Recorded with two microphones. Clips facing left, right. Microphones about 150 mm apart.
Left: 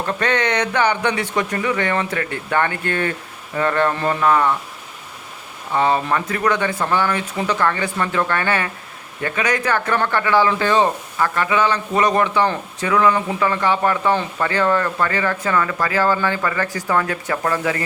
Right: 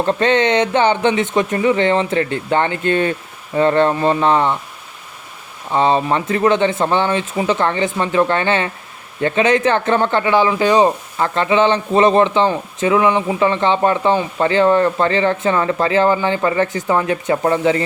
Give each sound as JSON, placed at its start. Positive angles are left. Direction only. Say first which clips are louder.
{"t": 0.0, "sound": "speech", "louder": "right 6 dB", "side_deg": -25}
{"t": 5.7, "sound": "speech", "louder": "right 3 dB", "side_deg": -20}